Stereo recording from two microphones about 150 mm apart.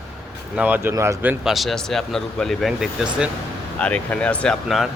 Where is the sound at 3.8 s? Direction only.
10° left (ahead or behind).